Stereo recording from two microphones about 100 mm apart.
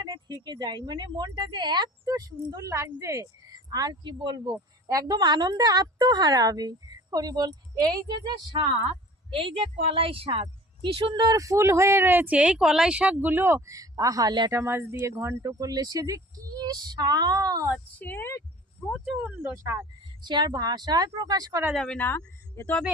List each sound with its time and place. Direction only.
0.0 s a sound: 45° right (ahead or behind)
0.4 s a woman's voice: 45° right (ahead or behind); by 3.2 s 30° right (ahead or behind)
3.4 s a woman's voice: 40° right (ahead or behind)
9.3 s a woman's voice: 60° right (ahead or behind)
11.3 s speech: 30° right (ahead or behind); by 14.5 s 45° right (ahead or behind)
14.5 s speech: 25° right (ahead or behind)
18.0 s speech: 20° left (ahead or behind)
18.8 s speech: 5° right (ahead or behind)
20.2 s a woman's voice: 50° right (ahead or behind)
21.8 s a woman's voice: 10° left (ahead or behind)
22.0 s speech: 20° left (ahead or behind)